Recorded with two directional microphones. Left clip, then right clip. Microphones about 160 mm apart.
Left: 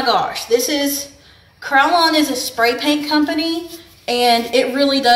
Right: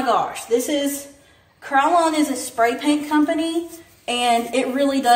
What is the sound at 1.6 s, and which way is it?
A woman's voice, 25° right (ahead or behind).